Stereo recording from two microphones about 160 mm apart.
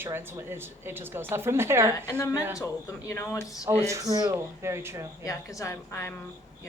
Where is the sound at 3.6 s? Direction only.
20° right (ahead or behind).